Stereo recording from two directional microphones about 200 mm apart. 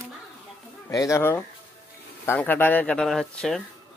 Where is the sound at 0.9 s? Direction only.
15° left (ahead or behind).